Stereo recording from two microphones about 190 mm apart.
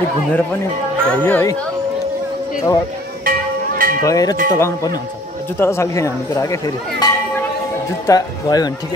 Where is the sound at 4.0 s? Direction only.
20° left (ahead or behind).